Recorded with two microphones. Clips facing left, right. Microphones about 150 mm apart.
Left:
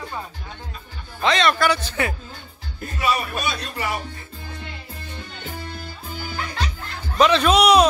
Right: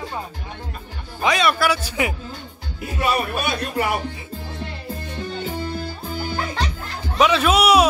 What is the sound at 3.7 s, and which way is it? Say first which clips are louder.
Speech: right 8 dB; 55° right (ahead or behind).